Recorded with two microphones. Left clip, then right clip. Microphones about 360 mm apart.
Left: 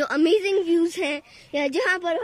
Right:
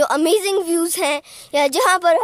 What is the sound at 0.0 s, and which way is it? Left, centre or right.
A woman's voice, centre.